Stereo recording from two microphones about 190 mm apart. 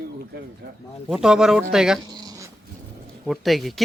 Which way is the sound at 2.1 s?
20° right (ahead or behind).